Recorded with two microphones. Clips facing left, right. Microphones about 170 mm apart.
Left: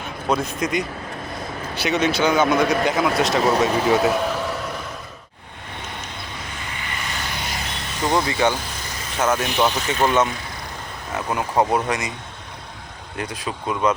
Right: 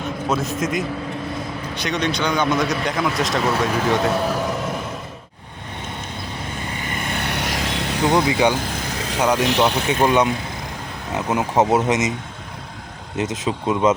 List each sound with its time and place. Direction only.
0.3 s speech: centre (ahead or behind)
6.8 s vehicle: 50° right (ahead or behind); by 8.1 s 70° right (ahead or behind)
8.1 s speech: 15° right (ahead or behind)
8.9 s vehicle: 70° right (ahead or behind)
9.1 s speech: 15° right (ahead or behind)
13.1 s speech: 20° right (ahead or behind)